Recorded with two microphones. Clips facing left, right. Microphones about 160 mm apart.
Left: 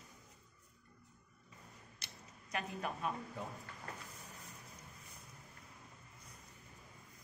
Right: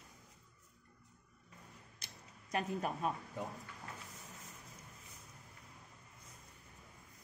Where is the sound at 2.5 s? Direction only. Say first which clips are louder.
Right 4 dB; 40° right (ahead or behind).